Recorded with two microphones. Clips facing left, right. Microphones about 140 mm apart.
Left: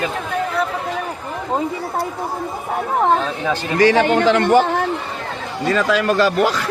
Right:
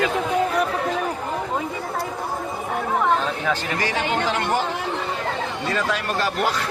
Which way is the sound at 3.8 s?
85° left.